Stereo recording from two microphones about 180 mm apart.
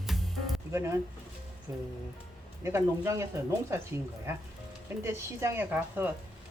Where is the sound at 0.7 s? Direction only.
15° right (ahead or behind).